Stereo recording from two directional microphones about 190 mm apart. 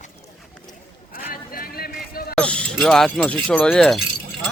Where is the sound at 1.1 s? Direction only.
50° left (ahead or behind).